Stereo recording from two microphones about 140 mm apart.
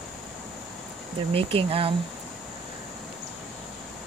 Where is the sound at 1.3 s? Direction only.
40° right (ahead or behind).